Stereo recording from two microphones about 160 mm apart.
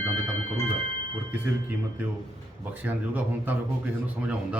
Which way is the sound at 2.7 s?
10° right (ahead or behind).